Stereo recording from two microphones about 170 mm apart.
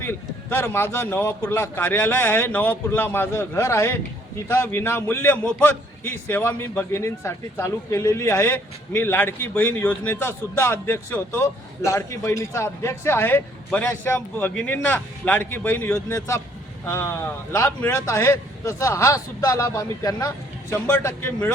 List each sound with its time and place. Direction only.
0.0 s a man's voice: 15° left (ahead or behind)